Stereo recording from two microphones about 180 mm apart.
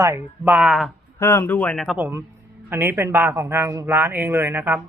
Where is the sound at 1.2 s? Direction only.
15° left (ahead or behind).